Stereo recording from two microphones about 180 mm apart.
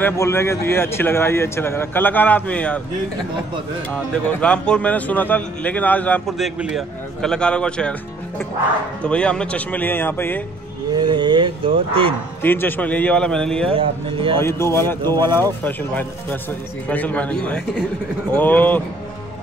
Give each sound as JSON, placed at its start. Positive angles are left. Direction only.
{"t": 0.0, "sound": "speech", "side_deg": 15}
{"t": 3.9, "sound": "a man's voice", "side_deg": 5}
{"t": 9.0, "sound": "speech", "side_deg": 5}
{"t": 10.9, "sound": "speech", "side_deg": -25}
{"t": 12.4, "sound": "speech", "side_deg": 10}
{"t": 13.7, "sound": "speech", "side_deg": -30}
{"t": 14.4, "sound": "speech", "side_deg": 15}